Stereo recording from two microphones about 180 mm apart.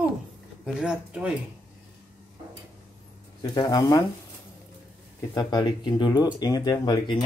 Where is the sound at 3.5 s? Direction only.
20° left (ahead or behind).